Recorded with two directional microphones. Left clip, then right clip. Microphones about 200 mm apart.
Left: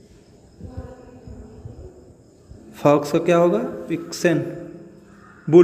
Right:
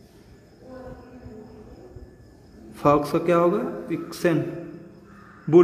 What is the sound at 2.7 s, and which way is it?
A man's voice, 15° left (ahead or behind).